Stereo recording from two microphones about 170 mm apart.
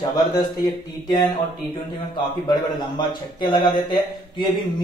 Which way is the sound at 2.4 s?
25° left (ahead or behind).